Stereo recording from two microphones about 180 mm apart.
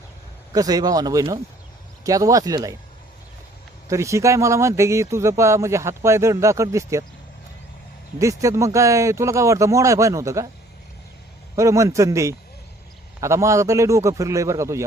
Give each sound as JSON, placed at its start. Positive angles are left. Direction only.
{"t": 0.5, "sound": "speech", "side_deg": -20}
{"t": 3.8, "sound": "speech", "side_deg": -15}
{"t": 8.2, "sound": "speech", "side_deg": -15}
{"t": 11.5, "sound": "speech", "side_deg": -15}